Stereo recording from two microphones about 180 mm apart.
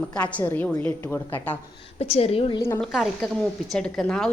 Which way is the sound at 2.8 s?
Centre (ahead or behind).